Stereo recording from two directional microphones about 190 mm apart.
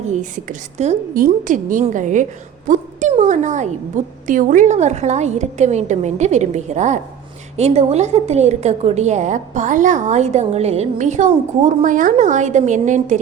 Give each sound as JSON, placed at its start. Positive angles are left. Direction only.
{"t": 0.1, "sound": "a woman's voice", "side_deg": -40}